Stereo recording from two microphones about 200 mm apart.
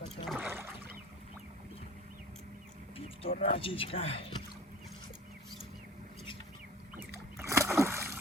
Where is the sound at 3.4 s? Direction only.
30° left (ahead or behind).